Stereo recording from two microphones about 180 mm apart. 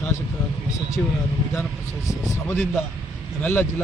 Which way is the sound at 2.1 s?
15° left (ahead or behind).